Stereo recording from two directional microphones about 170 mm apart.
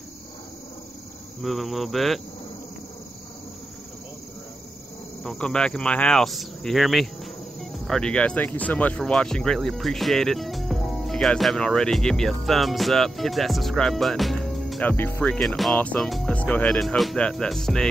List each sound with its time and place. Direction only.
1.4 s speech: centre (ahead or behind)
5.2 s speech: 5° left (ahead or behind)